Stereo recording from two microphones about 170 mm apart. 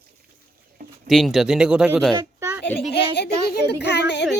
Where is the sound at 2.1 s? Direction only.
15° right (ahead or behind).